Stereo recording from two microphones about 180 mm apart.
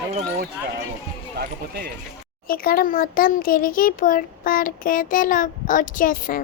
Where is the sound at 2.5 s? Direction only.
55° left (ahead or behind).